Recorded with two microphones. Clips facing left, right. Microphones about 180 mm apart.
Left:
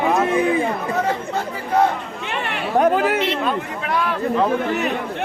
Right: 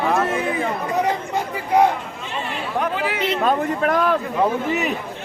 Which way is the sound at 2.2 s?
70° left (ahead or behind).